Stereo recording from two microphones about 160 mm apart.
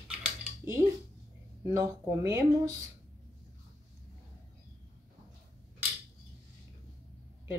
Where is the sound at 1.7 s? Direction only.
20° right (ahead or behind).